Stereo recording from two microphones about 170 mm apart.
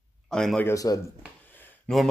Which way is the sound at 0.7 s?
20° left (ahead or behind).